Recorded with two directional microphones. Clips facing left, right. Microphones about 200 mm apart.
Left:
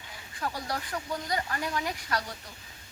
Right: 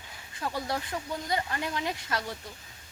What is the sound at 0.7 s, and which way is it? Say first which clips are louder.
Speech: right 1 dB; 25° right (ahead or behind).